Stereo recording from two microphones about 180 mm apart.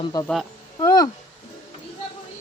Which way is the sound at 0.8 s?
20° left (ahead or behind).